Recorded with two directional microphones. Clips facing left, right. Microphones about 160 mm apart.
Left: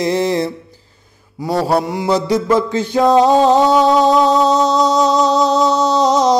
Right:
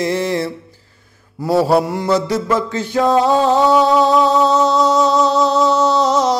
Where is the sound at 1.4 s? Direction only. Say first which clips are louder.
Right 2 dB; centre (ahead or behind).